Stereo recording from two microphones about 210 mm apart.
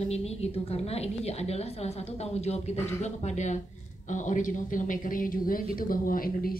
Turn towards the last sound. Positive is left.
turn(degrees=45)  # may be behind; listen again after turning